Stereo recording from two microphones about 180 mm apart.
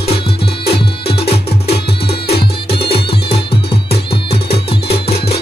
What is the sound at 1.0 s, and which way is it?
Music, 35° left (ahead or behind).